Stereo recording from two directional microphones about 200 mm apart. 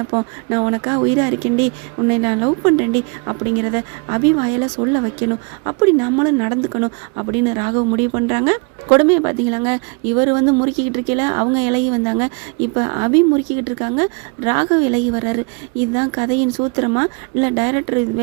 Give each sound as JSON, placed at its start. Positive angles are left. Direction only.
{"t": 0.1, "sound": "speech", "side_deg": -30}